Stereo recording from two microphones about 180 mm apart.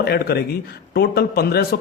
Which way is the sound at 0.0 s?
60° left (ahead or behind).